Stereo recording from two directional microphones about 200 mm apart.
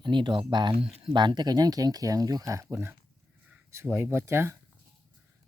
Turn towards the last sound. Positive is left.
turn(degrees=-10)  # may be behind; listen again after turning